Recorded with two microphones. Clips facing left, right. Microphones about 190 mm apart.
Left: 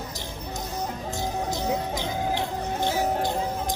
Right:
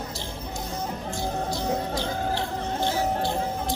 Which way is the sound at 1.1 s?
15° left (ahead or behind).